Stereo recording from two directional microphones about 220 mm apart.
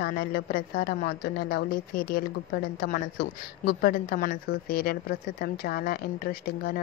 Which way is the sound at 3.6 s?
40° left (ahead or behind).